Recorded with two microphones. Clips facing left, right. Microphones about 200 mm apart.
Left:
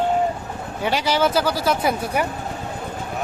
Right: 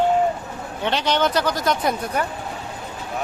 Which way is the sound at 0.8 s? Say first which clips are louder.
Left 1 dB; 10° left (ahead or behind).